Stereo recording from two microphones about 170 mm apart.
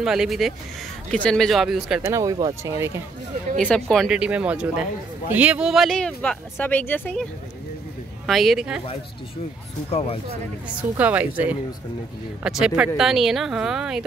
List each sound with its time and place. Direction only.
0.0 s speech: 5° right (ahead or behind)
2.0 s speech: 20° right (ahead or behind)
3.5 s speech: 5° left (ahead or behind)
8.3 s speech: centre (ahead or behind)
9.8 s speech: 35° left (ahead or behind)
10.8 s speech: 10° right (ahead or behind)